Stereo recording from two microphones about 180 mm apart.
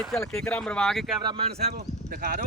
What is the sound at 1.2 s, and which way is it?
Speech, 25° right (ahead or behind).